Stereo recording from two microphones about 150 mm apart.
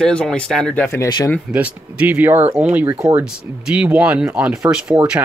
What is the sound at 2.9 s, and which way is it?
Speech, 20° right (ahead or behind).